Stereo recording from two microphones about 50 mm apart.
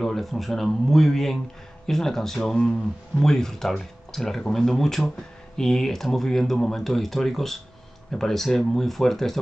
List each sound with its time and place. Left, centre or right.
0.0 s speech: centre